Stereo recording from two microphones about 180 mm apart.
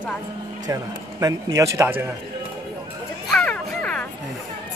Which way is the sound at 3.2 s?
5° left (ahead or behind).